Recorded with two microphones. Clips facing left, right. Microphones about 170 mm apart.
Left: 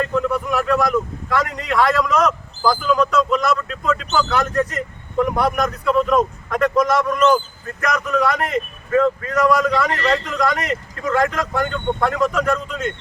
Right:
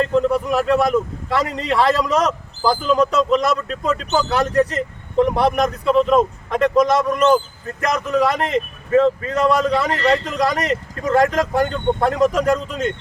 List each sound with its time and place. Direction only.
0.0 s speech: 30° right (ahead or behind)